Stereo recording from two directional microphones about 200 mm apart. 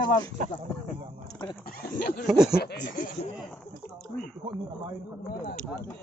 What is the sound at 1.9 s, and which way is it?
Snicker, 45° left (ahead or behind).